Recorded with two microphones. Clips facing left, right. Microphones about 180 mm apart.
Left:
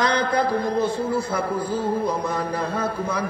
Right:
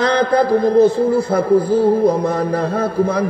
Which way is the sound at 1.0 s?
55° right (ahead or behind).